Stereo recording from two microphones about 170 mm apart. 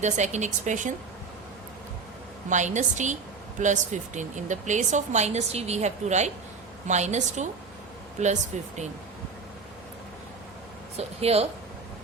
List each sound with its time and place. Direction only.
0.0 s speech: 45° right (ahead or behind)
2.5 s speech: 45° right (ahead or behind)
10.9 s speech: 40° right (ahead or behind)